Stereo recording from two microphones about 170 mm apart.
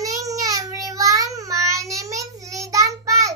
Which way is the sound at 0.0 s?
20° right (ahead or behind).